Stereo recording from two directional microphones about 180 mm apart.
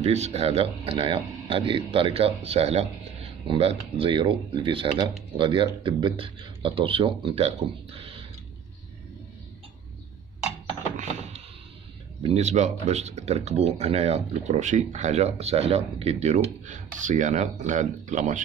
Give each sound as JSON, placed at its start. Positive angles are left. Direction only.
{"t": 0.0, "sound": "a man's voice", "side_deg": -35}
{"t": 11.0, "sound": "a sound", "side_deg": -40}
{"t": 12.2, "sound": "speech", "side_deg": -35}